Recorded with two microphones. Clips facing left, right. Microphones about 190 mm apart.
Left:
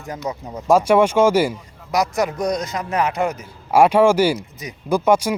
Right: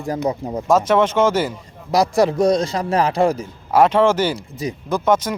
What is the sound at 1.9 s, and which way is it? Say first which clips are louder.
Speech: right 4 dB; 30° right (ahead or behind).